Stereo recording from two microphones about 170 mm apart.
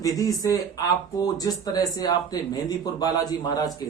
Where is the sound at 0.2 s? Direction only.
20° left (ahead or behind).